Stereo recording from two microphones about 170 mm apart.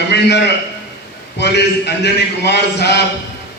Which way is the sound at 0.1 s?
80° left.